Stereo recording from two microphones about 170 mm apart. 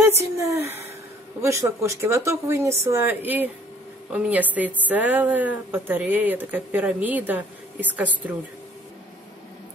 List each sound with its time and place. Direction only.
0.4 s a woman's voice: 20° right (ahead or behind)